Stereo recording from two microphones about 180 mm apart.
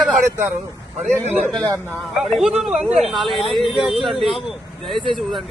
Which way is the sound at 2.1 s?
5° right (ahead or behind).